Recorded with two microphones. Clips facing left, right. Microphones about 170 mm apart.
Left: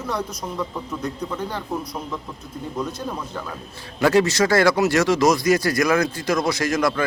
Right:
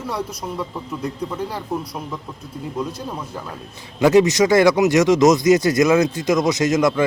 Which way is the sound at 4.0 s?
20° right (ahead or behind).